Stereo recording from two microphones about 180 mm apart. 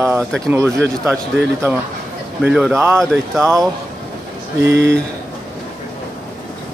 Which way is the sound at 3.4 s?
15° right (ahead or behind).